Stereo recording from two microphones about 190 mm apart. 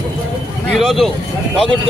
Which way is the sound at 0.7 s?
Centre (ahead or behind).